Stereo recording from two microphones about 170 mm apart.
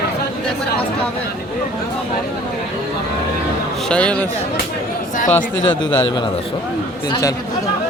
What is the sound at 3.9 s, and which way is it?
Speech, 5° left (ahead or behind).